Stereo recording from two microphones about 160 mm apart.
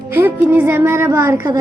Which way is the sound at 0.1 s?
15° right (ahead or behind).